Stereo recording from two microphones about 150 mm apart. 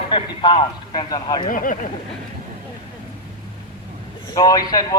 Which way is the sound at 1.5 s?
65° left (ahead or behind).